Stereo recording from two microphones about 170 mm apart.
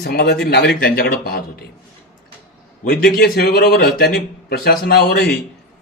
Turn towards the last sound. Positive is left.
turn(degrees=65)  # may be behind; listen again after turning